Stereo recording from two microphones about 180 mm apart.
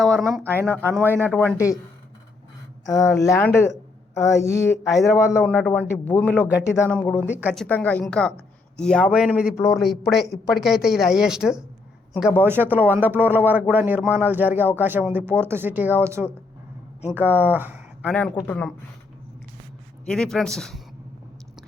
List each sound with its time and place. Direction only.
0.0 s a woman's voice: centre (ahead or behind)
0.9 s speech: 10° left (ahead or behind)
2.8 s speech: 15° left (ahead or behind)
4.9 s a woman's voice: centre (ahead or behind)
5.1 s speech: 15° left (ahead or behind)
7.3 s speech: 10° right (ahead or behind)
7.5 s a woman's voice: 5° left (ahead or behind)
18.1 s speech: 5° left (ahead or behind)
20.1 s a woman's voice: 5° left (ahead or behind)